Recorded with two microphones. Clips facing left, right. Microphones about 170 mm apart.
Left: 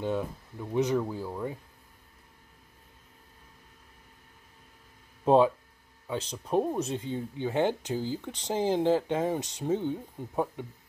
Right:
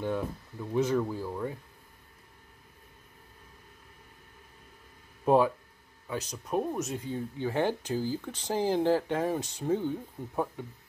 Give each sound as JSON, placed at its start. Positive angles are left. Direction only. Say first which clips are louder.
{"t": 0.0, "sound": "speech", "louder": "left 1 dB", "side_deg": 20}
{"t": 5.2, "sound": "speech", "louder": "left 2 dB", "side_deg": 20}